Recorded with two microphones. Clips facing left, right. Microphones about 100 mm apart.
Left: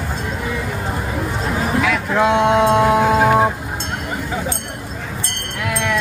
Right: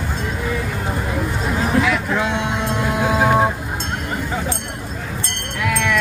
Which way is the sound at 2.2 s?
70° left (ahead or behind).